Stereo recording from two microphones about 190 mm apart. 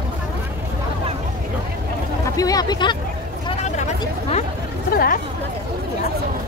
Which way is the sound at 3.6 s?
40° left (ahead or behind).